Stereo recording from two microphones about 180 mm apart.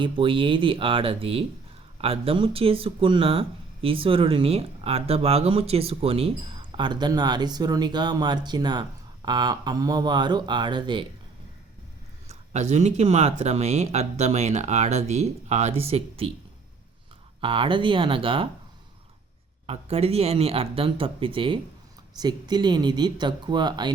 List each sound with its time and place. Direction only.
0.0 s speech: 30° right (ahead or behind)
12.3 s speech: 40° right (ahead or behind)
17.4 s speech: 30° right (ahead or behind)
19.6 s speech: 35° right (ahead or behind)